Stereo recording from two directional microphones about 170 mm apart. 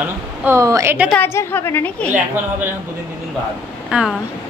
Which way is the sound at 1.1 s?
15° left (ahead or behind).